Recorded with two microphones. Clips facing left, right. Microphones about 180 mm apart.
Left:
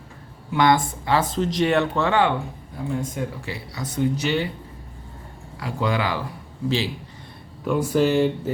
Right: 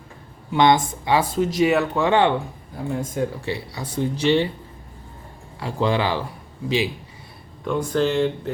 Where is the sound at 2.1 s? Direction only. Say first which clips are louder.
Right 5 dB; 25° right (ahead or behind).